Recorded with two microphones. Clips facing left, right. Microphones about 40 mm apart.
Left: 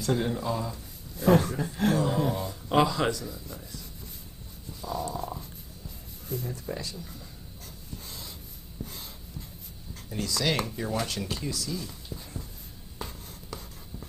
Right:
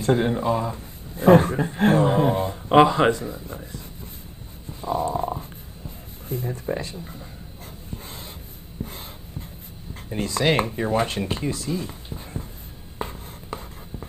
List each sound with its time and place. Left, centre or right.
0.0 s speech: right
4.6 s stomach rumble: right
6.2 s speech: right
7.9 s dog: right
8.8 s a sound: right
10.0 s speech: right
13.0 s writing: right